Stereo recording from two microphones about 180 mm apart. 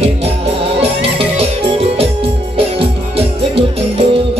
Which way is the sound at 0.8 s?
30° right (ahead or behind).